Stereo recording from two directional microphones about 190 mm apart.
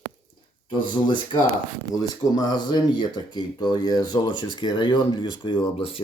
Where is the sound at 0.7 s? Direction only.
25° left (ahead or behind).